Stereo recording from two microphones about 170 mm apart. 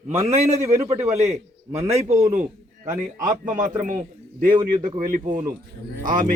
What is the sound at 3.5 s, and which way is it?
Speech, 50° right (ahead or behind).